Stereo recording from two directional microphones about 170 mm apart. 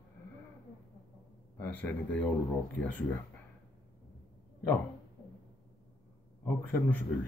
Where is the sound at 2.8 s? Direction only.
90° left.